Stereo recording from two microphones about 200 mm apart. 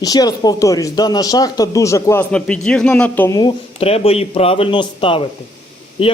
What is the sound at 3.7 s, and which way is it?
Speech, 30° left (ahead or behind).